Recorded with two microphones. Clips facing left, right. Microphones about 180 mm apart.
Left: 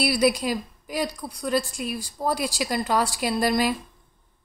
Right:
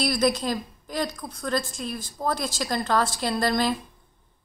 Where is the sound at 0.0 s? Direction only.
10° left (ahead or behind).